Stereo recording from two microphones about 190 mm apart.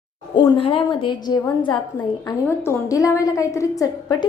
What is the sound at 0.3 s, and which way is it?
A woman's voice, 25° left (ahead or behind).